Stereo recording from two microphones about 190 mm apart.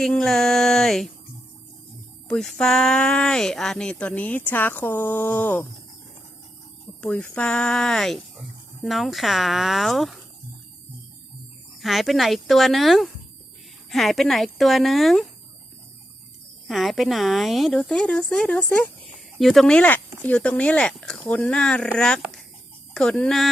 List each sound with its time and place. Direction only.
0.0 s a sound: centre (ahead or behind)
2.2 s speech: 5° left (ahead or behind)
7.0 s speech: 5° left (ahead or behind)
11.8 s speech: centre (ahead or behind)
16.6 s speech: centre (ahead or behind)